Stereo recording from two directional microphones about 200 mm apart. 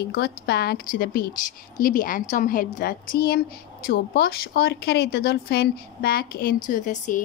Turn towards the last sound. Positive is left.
turn(degrees=40)  # may be behind; listen again after turning